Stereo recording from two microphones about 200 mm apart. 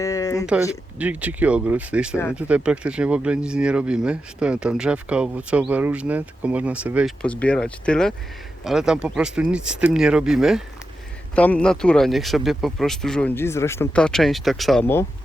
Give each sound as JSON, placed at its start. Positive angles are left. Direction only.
{"t": 0.0, "sound": "a sound", "side_deg": 15}
{"t": 0.7, "sound": "speech", "side_deg": -5}
{"t": 7.2, "sound": "speech", "side_deg": 5}